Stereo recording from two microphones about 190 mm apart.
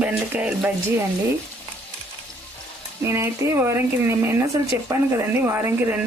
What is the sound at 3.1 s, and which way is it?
Speech, 15° right (ahead or behind).